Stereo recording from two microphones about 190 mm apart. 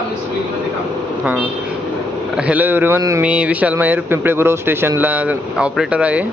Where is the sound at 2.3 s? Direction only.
10° right (ahead or behind).